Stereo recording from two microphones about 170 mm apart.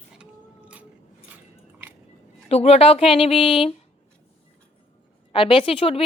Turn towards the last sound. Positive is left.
turn(degrees=35)  # may be behind; listen again after turning